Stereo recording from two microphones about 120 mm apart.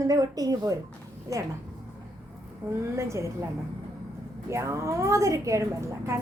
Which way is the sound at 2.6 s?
25° right (ahead or behind).